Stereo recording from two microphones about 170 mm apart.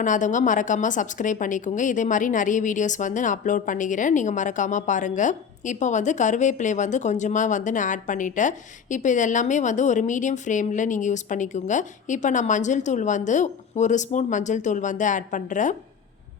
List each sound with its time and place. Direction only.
0.0 s a woman's voice: 50° left (ahead or behind)